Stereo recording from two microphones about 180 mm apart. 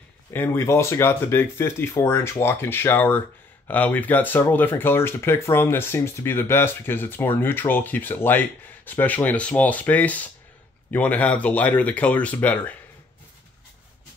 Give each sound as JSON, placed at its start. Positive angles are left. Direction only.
{"t": 0.3, "sound": "speech", "side_deg": 15}